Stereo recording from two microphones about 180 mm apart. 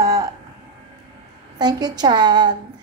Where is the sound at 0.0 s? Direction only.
15° right (ahead or behind).